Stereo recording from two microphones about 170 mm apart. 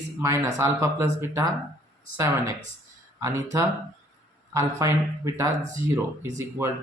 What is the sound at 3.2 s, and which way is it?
Speech, 15° right (ahead or behind).